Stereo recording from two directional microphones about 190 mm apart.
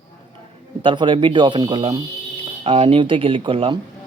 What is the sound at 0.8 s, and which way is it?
Speech, 25° right (ahead or behind).